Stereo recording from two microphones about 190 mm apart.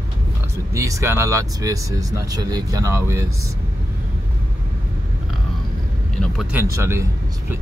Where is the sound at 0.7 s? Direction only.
15° right (ahead or behind).